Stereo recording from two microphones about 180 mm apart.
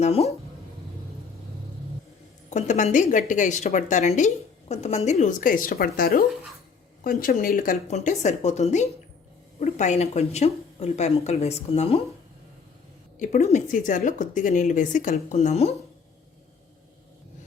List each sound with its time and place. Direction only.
0.0 s speech: 35° left (ahead or behind)
2.5 s speech: 40° left (ahead or behind)
13.1 s speech: 45° left (ahead or behind)